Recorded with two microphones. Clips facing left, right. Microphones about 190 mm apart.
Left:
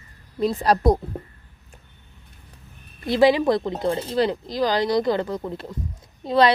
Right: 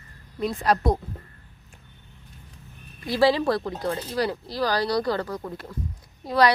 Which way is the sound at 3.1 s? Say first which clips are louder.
Left 4 dB; 20° left (ahead or behind).